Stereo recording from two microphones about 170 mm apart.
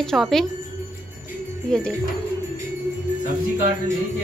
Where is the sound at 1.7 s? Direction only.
5° left (ahead or behind).